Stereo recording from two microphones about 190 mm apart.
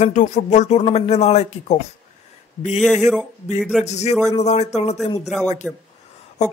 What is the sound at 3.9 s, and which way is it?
Speech, 35° left (ahead or behind).